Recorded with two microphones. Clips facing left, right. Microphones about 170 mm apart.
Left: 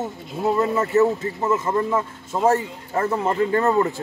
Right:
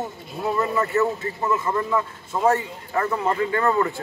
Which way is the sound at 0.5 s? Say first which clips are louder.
Left 3 dB; 25° left (ahead or behind).